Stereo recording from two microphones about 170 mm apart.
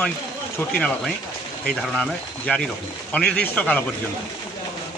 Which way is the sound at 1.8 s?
Centre (ahead or behind).